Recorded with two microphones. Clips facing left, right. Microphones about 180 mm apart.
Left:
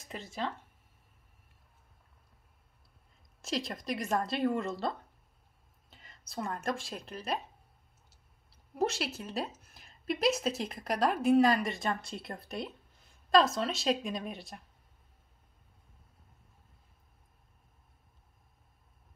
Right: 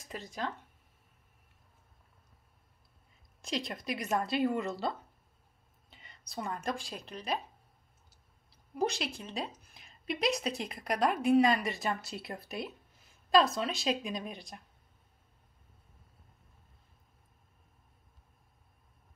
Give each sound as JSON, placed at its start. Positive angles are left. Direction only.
{"t": 3.4, "sound": "a woman's voice", "side_deg": 0}